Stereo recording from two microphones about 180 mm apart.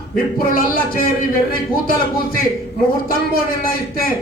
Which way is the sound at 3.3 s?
55° left (ahead or behind).